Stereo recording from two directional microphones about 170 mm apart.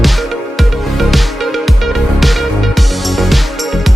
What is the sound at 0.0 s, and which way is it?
Music, centre (ahead or behind).